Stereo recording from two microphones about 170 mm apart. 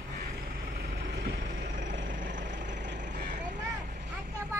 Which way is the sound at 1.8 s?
90° right.